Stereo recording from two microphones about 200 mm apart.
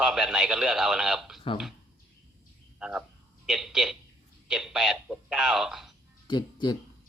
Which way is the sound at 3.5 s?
Centre (ahead or behind).